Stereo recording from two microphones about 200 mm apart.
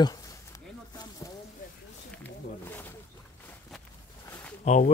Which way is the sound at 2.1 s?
10° left (ahead or behind).